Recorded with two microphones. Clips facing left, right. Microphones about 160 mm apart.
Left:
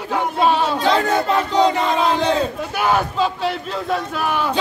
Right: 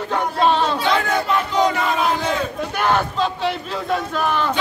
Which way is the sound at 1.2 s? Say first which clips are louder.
Left 2 dB; 35° left (ahead or behind).